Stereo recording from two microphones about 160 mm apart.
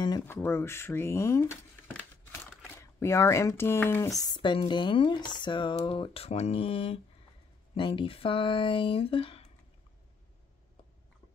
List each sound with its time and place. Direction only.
0.2 s speech: 15° left (ahead or behind)
2.6 s speech: 15° left (ahead or behind)
4.3 s speech: 30° left (ahead or behind)